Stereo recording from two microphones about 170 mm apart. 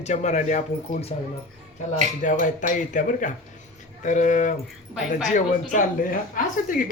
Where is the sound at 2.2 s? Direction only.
50° left (ahead or behind).